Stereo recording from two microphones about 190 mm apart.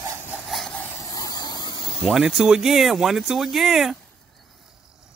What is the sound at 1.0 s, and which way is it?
Hiss, 20° left (ahead or behind).